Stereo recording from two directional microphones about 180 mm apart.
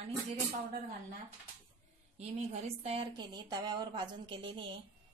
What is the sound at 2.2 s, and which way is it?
A woman's voice, 35° right (ahead or behind).